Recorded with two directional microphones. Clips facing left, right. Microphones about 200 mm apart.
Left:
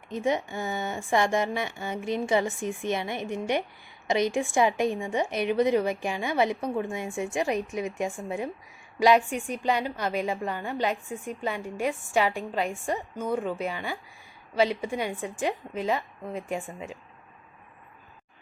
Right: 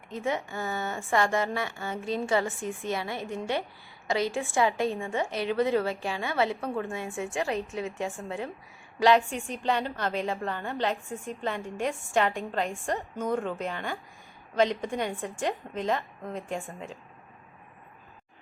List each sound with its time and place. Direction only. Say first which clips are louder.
0.1 s a woman's voice: left 4 dB; 20° left (ahead or behind)